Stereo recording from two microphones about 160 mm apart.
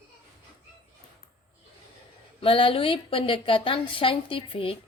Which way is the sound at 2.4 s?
35° left (ahead or behind).